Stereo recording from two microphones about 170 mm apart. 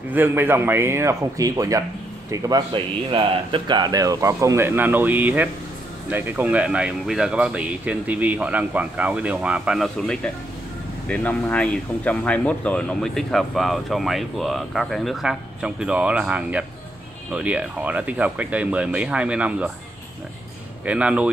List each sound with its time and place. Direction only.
0.1 s speech: 10° right (ahead or behind)
20.8 s speech: 5° right (ahead or behind)